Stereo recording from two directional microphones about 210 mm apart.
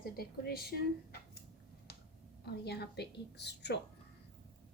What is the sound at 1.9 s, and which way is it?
Finger snapping, 50° left (ahead or behind).